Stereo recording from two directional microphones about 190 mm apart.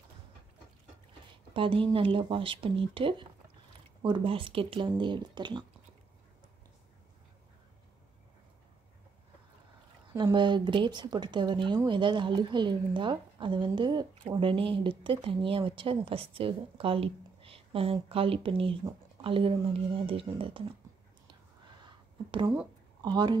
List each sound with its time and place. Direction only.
1.5 s speech: 25° right (ahead or behind)
10.1 s speech: 25° right (ahead or behind)
21.8 s a sound: 25° right (ahead or behind)
23.0 s speech: 25° right (ahead or behind)